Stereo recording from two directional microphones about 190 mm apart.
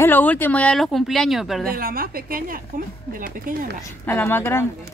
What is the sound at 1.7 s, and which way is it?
A woman's voice, 50° right (ahead or behind).